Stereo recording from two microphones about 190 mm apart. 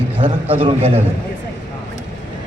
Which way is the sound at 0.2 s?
25° right (ahead or behind).